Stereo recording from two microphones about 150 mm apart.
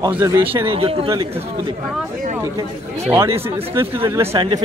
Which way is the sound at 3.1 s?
20° right (ahead or behind).